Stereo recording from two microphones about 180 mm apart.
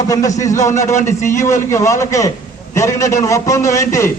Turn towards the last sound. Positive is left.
turn(degrees=15)  # may be behind; listen again after turning